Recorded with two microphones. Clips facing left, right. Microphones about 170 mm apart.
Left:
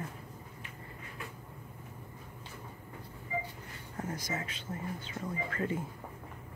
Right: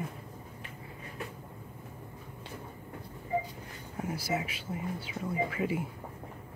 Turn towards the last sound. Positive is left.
turn(degrees=-10)  # may be behind; listen again after turning